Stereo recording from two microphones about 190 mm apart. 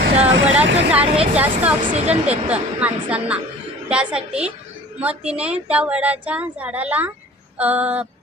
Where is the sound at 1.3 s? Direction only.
10° right (ahead or behind).